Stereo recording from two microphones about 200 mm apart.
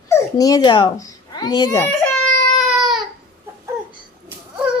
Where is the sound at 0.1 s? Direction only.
20° left (ahead or behind).